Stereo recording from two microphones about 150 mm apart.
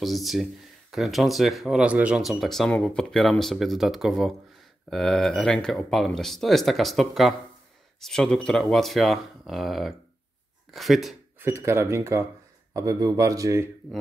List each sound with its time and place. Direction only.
0.0 s speech: centre (ahead or behind)
11.3 s speech: 15° right (ahead or behind)